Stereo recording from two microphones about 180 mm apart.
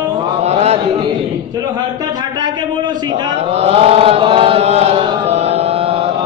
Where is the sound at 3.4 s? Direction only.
35° right (ahead or behind).